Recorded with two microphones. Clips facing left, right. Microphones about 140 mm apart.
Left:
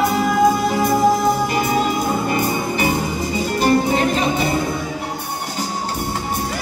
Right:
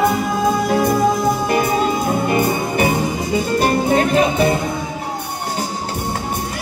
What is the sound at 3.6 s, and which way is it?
Music, 50° right (ahead or behind).